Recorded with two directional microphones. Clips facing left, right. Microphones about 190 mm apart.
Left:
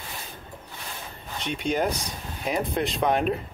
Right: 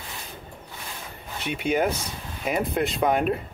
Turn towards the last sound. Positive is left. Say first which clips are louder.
# right 1 dB
turn(degrees=0)  # may be behind; listen again after turning